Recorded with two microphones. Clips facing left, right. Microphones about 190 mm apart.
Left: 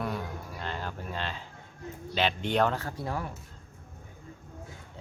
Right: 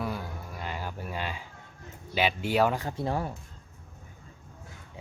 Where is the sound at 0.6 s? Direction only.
10° right (ahead or behind).